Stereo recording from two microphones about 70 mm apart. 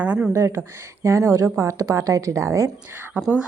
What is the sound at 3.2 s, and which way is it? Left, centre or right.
Speech, right.